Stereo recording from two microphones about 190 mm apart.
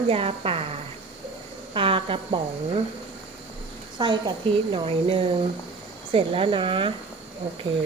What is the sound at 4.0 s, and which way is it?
Speech, 25° right (ahead or behind).